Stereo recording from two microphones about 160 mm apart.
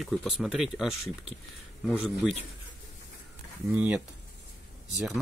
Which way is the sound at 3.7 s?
10° right (ahead or behind).